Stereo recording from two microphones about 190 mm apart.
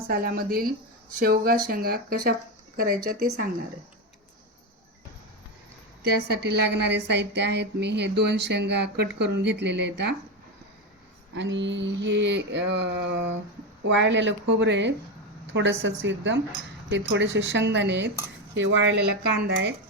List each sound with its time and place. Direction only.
0.1 s speech: 50° right (ahead or behind)
6.1 s a woman's voice: 60° right (ahead or behind)
11.3 s mantra: 70° right (ahead or behind)